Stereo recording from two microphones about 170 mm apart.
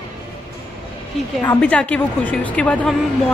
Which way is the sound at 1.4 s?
5° left (ahead or behind).